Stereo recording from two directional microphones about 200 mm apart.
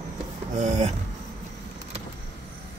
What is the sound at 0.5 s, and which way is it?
Speech, 35° right (ahead or behind).